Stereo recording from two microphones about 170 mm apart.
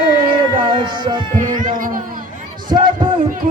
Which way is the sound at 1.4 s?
50° right (ahead or behind).